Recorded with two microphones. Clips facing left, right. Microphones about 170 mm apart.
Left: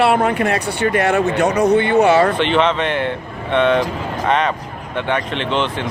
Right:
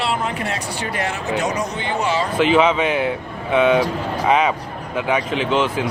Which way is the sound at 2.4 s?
5° right (ahead or behind).